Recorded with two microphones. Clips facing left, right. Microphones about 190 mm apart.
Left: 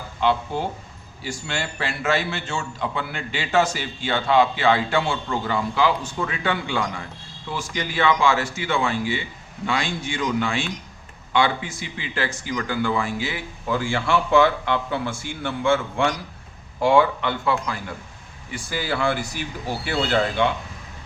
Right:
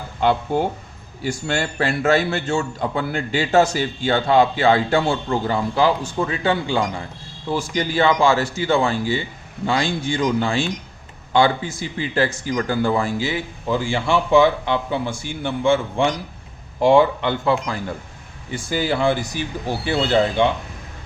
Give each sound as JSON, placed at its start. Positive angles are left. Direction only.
{"t": 0.2, "sound": "a man's voice", "side_deg": -50}